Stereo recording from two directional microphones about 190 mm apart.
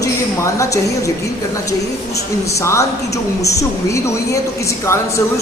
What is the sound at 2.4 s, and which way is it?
A woman's voice, 15° left (ahead or behind).